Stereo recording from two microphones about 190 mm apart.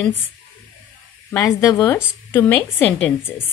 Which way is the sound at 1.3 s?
15° left (ahead or behind).